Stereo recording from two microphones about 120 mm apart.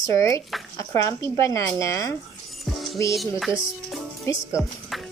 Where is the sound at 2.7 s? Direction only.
Centre (ahead or behind).